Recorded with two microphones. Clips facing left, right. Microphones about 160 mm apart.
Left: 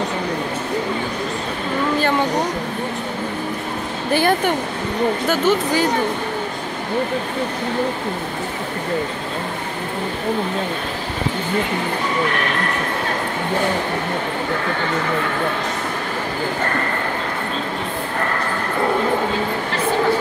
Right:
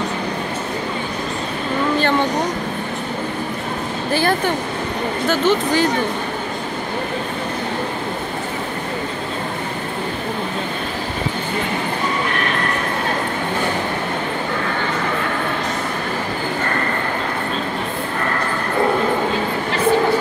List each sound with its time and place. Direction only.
4.1 s speech: 15° left (ahead or behind)